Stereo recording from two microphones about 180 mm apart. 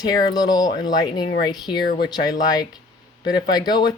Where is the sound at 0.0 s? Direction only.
20° left (ahead or behind).